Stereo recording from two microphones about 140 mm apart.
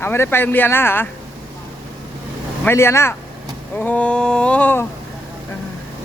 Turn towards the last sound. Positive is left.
turn(degrees=10)  # may be behind; listen again after turning